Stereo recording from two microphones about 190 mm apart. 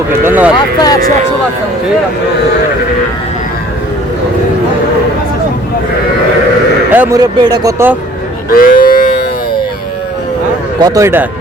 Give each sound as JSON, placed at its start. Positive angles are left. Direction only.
{"t": 0.3, "sound": "speech", "side_deg": -10}
{"t": 0.8, "sound": "speech", "side_deg": 20}
{"t": 6.9, "sound": "speech", "side_deg": -10}
{"t": 7.2, "sound": "speech", "side_deg": -20}
{"t": 8.4, "sound": "a sound", "side_deg": 50}
{"t": 10.8, "sound": "speech", "side_deg": -20}